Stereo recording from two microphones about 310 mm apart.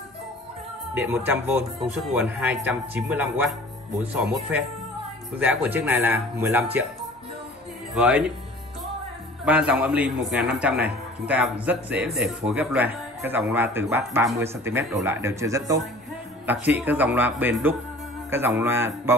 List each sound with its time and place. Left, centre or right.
0.9 s a man's voice: centre
7.9 s a man's voice: centre
9.4 s a man's voice: centre